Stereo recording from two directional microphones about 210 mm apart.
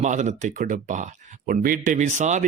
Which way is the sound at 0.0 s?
35° right (ahead or behind).